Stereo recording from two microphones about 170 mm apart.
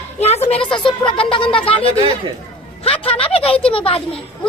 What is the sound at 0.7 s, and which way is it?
A woman's voice, 30° left (ahead or behind).